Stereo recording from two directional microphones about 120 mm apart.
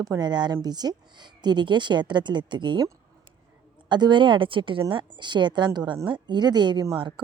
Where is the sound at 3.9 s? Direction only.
40° right (ahead or behind).